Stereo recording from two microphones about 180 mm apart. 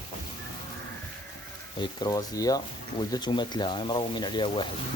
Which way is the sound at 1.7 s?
25° left (ahead or behind).